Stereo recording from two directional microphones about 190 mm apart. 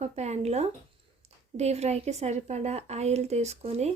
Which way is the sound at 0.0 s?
35° right (ahead or behind).